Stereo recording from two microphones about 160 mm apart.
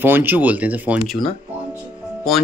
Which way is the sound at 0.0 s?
15° right (ahead or behind).